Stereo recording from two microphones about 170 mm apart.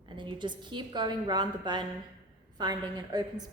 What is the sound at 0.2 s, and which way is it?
A woman's voice, 25° right (ahead or behind).